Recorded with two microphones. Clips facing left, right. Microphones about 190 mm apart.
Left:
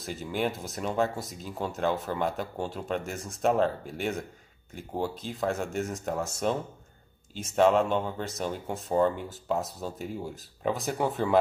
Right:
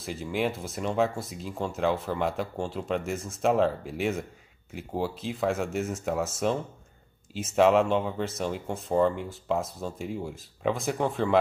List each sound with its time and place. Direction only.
0.0 s speech: centre (ahead or behind)